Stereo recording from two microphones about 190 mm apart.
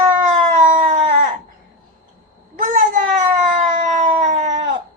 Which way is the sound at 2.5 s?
45° right (ahead or behind).